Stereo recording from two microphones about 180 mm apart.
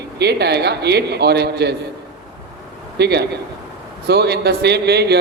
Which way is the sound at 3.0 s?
70° right (ahead or behind).